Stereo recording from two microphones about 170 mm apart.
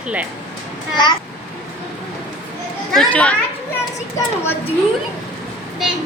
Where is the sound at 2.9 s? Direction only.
5° left (ahead or behind).